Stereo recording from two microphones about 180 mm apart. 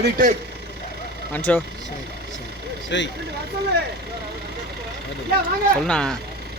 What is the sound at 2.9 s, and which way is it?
Speech, 80° left.